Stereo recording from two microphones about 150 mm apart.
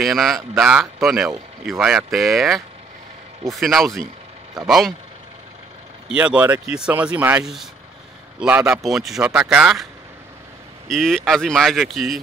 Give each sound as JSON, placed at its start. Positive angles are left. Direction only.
{"t": 0.0, "sound": "speech", "side_deg": 0}
{"t": 6.0, "sound": "speech", "side_deg": -10}
{"t": 8.8, "sound": "speech", "side_deg": 0}
{"t": 10.9, "sound": "speech", "side_deg": 5}